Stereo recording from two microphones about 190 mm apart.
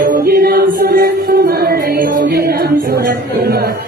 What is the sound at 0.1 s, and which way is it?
Music, 50° right (ahead or behind).